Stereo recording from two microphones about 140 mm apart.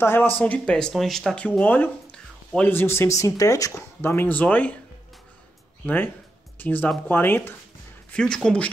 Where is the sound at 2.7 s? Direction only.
15° left (ahead or behind).